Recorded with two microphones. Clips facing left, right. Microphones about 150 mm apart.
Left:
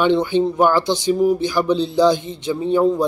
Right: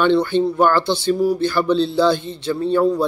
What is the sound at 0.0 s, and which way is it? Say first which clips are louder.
Speech: even; 15° left (ahead or behind).